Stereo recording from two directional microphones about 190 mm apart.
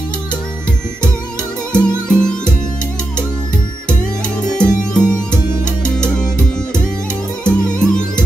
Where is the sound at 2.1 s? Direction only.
5° left (ahead or behind).